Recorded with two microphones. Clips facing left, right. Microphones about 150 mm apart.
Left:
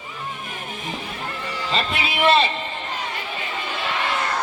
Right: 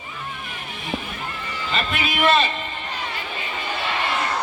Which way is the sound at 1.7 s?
30° left (ahead or behind).